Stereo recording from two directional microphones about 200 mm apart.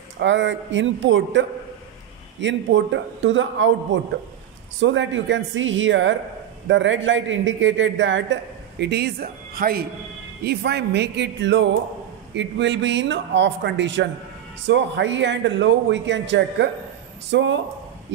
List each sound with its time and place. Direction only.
0.2 s a man's voice: 65° right (ahead or behind)